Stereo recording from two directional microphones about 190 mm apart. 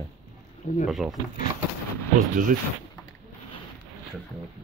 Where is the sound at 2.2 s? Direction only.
45° right (ahead or behind).